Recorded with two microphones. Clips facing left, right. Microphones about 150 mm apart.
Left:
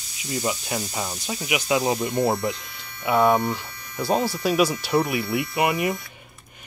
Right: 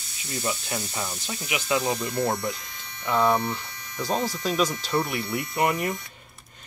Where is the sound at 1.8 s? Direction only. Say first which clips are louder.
Left 4 dB; 25° left (ahead or behind).